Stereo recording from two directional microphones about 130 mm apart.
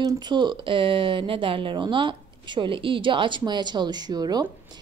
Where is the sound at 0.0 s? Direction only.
35° right (ahead or behind).